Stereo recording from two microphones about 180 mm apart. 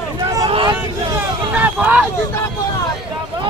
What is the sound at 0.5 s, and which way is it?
Vehicle, 30° right (ahead or behind).